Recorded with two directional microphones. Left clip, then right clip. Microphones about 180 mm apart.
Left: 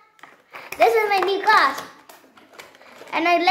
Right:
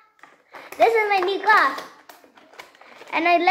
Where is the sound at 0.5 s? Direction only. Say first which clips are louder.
Left 1 dB; 25° left (ahead or behind).